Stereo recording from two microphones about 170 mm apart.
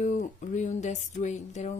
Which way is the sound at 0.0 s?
45° left (ahead or behind).